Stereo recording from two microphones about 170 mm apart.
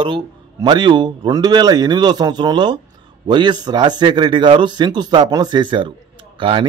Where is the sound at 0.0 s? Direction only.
25° right (ahead or behind).